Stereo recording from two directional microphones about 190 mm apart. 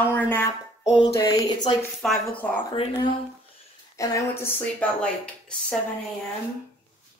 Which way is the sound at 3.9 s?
15° left (ahead or behind).